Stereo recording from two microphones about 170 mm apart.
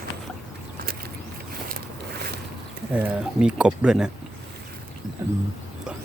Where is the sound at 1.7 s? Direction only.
65° right (ahead or behind).